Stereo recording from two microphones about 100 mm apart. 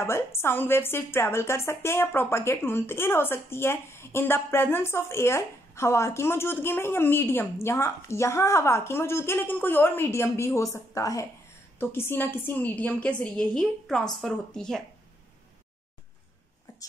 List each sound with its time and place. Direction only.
0.0 s a woman's voice: 25° left (ahead or behind)
11.8 s a woman's voice: 20° left (ahead or behind); by 14.8 s 5° left (ahead or behind)